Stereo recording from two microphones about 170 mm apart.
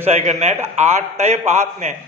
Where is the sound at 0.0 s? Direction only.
40° right (ahead or behind).